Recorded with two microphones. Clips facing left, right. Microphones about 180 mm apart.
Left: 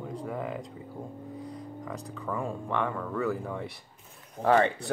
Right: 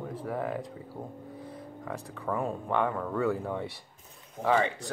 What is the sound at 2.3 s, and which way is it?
Speech, 20° right (ahead or behind).